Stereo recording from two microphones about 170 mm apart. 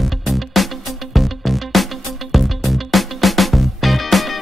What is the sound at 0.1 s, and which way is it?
Music, centre (ahead or behind).